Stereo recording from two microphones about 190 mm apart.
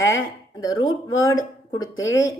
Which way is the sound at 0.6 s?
20° left (ahead or behind).